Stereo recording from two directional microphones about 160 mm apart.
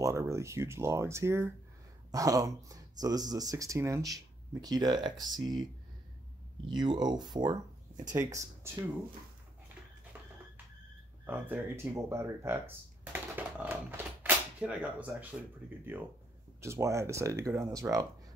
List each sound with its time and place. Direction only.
0.0 s speech: 20° right (ahead or behind)
6.8 s speech: 25° right (ahead or behind)
11.2 s speech: 10° right (ahead or behind)
13.0 s typewriter: 10° right (ahead or behind)
15.8 s speech: 10° right (ahead or behind)